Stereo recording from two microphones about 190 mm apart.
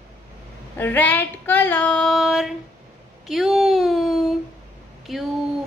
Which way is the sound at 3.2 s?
Centre (ahead or behind).